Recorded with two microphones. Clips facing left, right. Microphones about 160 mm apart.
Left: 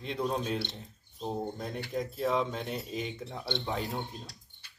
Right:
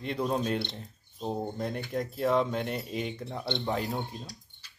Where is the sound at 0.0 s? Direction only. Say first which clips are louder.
Right 3 dB; centre (ahead or behind).